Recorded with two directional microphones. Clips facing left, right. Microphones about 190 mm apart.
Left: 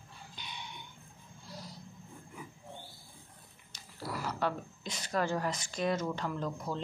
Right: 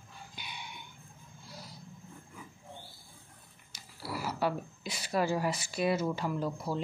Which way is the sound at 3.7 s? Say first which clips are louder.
Even; 10° right (ahead or behind).